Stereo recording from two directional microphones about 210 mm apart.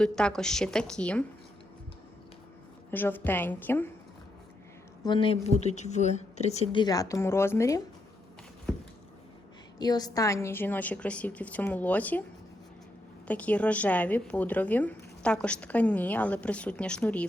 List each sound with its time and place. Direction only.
0.0 s a woman's voice: 5° left (ahead or behind)
2.9 s speech: 10° left (ahead or behind)
5.0 s a woman's voice: 25° left (ahead or behind)
6.8 s speech: 15° left (ahead or behind)
9.7 s speech: 20° left (ahead or behind)
13.2 s speech: 5° left (ahead or behind)